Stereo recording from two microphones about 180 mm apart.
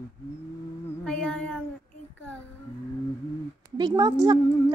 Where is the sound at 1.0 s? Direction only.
5° left (ahead or behind).